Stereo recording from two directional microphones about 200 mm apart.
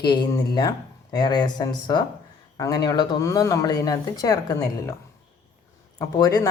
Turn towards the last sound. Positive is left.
turn(degrees=20)  # may be behind; listen again after turning